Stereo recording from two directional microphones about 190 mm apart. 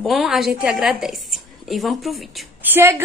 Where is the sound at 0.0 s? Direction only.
Centre (ahead or behind).